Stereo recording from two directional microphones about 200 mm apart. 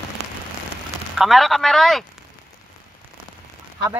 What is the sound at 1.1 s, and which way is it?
Speech, centre (ahead or behind).